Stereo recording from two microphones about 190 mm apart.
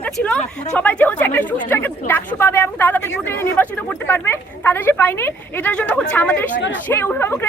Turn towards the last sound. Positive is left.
turn(degrees=10)  # may be behind; listen again after turning